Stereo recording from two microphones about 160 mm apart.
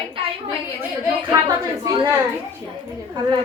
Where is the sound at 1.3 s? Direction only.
25° right (ahead or behind).